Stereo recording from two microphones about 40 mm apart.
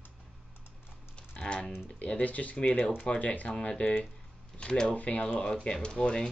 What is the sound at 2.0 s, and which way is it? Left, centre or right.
Speech, left.